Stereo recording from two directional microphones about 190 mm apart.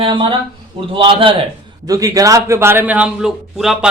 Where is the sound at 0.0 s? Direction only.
25° right (ahead or behind).